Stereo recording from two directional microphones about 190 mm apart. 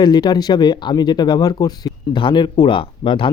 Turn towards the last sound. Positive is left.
turn(degrees=25)  # may be behind; listen again after turning